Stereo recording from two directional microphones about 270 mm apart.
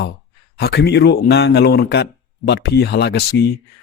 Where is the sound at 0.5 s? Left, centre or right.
Left.